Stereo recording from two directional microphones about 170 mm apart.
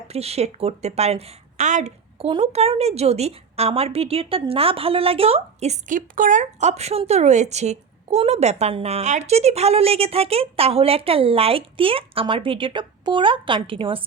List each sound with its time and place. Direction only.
0.1 s a woman's voice: 35° right (ahead or behind)